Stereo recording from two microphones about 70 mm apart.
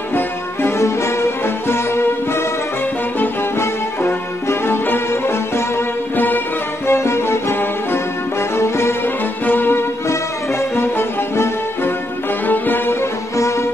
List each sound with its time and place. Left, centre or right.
0.1 s music: left
3.5 s music: left
6.9 s music: left
13.4 s music: left